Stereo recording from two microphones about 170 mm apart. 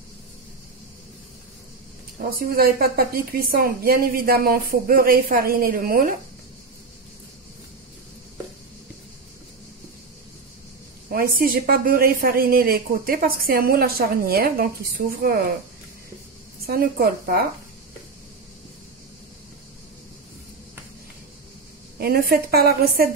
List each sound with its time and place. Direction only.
2.2 s a woman's voice: 60° right (ahead or behind)
11.1 s a woman's voice: 55° right (ahead or behind)
16.6 s a woman's voice: 60° right (ahead or behind)
21.9 s a woman's voice: 65° right (ahead or behind)